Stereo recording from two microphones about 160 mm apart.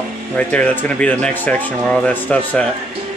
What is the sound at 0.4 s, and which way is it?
Speech, 10° left (ahead or behind).